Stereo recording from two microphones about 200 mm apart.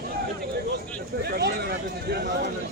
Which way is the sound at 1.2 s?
50° right (ahead or behind).